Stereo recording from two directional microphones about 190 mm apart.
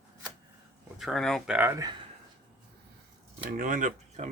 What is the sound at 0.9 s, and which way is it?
Speech, centre (ahead or behind).